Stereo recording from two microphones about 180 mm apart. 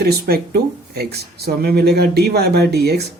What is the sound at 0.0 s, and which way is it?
Speech, 60° right (ahead or behind).